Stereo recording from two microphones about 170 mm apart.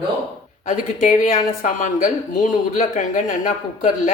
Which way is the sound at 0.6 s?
50° left (ahead or behind).